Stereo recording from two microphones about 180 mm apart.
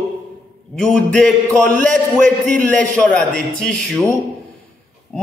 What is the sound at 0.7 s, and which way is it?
Speech, 5° left (ahead or behind).